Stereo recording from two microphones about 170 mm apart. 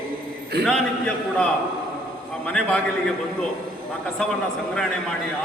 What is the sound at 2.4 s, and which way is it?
Speech, 5° left (ahead or behind).